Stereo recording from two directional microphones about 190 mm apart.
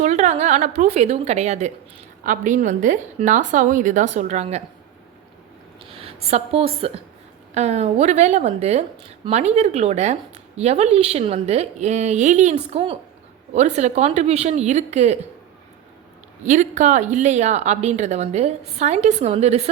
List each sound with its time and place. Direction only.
0.0 s speech: 35° right (ahead or behind)
5.8 s speech: 30° right (ahead or behind)
16.4 s speech: 40° right (ahead or behind)